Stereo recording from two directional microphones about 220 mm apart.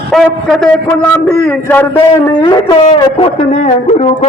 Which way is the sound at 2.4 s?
20° left (ahead or behind).